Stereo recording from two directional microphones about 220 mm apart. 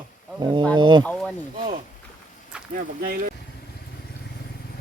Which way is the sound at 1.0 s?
5° left (ahead or behind).